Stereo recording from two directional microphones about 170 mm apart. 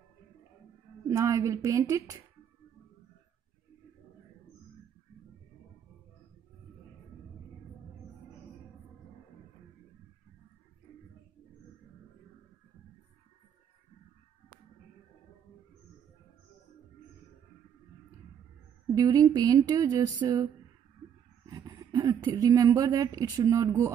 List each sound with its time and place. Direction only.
1.0 s a woman's voice: 20° right (ahead or behind)
18.9 s a sound: 20° right (ahead or behind)
21.5 s speech: 20° right (ahead or behind)